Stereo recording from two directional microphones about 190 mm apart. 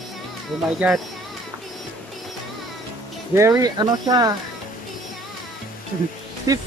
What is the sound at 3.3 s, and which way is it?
Speech, 15° right (ahead or behind).